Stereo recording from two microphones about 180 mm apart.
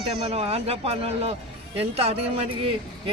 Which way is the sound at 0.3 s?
35° right (ahead or behind).